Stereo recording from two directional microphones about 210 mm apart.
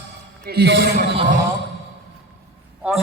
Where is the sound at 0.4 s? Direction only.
50° right (ahead or behind).